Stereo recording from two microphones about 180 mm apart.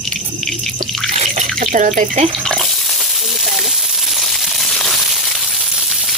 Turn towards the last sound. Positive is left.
turn(degrees=0)  # may be behind; listen again after turning